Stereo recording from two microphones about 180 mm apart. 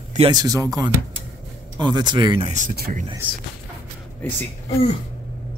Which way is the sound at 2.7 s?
60° right (ahead or behind).